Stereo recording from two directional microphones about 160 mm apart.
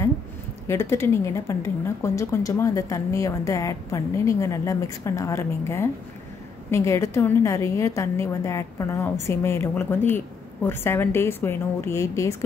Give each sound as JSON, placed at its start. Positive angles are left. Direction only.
{"t": 0.7, "sound": "a woman's voice", "side_deg": 15}